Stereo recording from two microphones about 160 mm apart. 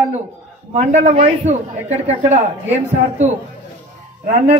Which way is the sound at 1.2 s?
40° right (ahead or behind).